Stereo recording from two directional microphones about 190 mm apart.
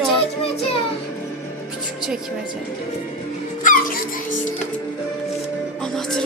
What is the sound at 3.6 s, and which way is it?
Music, 45° left (ahead or behind).